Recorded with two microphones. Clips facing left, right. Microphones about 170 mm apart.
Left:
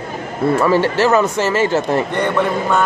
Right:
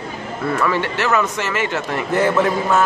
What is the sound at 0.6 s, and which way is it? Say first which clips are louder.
Speech: left 6 dB; 35° left (ahead or behind).